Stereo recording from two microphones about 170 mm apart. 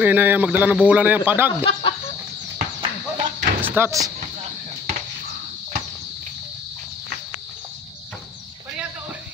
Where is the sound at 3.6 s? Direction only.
15° right (ahead or behind).